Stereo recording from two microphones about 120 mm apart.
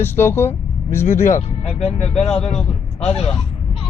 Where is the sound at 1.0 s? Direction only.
70° left (ahead or behind).